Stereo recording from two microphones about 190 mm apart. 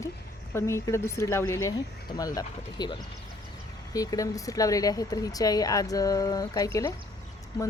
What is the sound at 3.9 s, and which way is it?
Speech, 20° left (ahead or behind).